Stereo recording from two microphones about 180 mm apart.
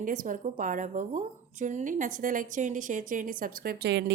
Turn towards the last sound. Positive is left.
turn(degrees=-70)  # may be behind; listen again after turning